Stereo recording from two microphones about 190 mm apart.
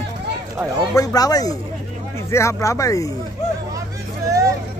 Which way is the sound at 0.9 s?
20° left (ahead or behind).